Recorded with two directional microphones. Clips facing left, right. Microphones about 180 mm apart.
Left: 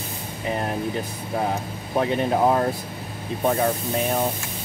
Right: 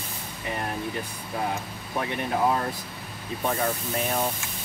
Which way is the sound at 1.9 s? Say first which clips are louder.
Left 6 dB; 30° left (ahead or behind).